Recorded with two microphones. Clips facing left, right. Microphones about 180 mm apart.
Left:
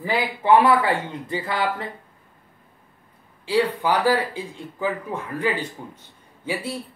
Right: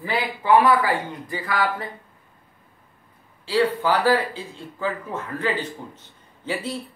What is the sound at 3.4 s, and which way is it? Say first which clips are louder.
Speech: even; 15° left (ahead or behind).